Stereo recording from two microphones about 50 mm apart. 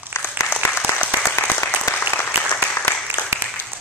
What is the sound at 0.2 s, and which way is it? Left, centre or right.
Applause, left.